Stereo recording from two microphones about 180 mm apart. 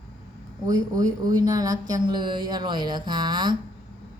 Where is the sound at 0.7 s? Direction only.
20° right (ahead or behind).